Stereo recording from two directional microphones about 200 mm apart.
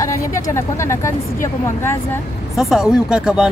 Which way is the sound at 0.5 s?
15° left (ahead or behind).